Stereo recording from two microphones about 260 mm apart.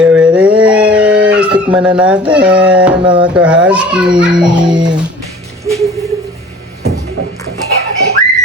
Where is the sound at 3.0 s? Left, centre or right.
Centre.